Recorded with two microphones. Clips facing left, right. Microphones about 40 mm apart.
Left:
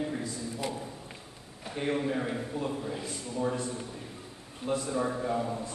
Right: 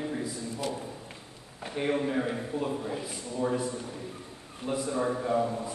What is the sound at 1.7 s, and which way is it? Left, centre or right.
A man's voice, centre.